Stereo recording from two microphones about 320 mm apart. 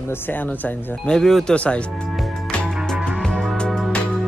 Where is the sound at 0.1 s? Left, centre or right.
Centre.